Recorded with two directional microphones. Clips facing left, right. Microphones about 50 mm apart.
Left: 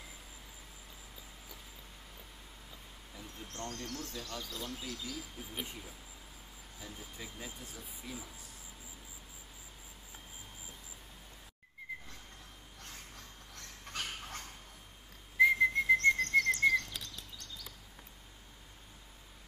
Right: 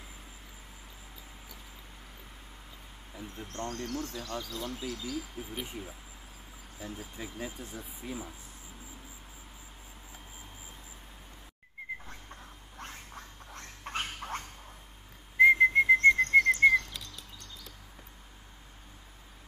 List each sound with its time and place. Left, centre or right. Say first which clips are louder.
3.4 s speech: right 5 dB; centre; by 8.2 s right
12.7 s a sound: right 7 dB; right
15.3 s whistle: right 6 dB; right